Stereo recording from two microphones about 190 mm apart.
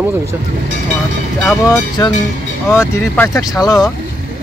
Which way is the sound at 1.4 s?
15° left (ahead or behind).